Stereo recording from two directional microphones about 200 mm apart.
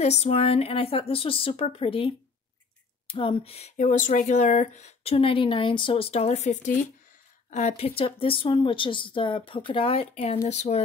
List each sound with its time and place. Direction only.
0.0 s speech: 30° left (ahead or behind)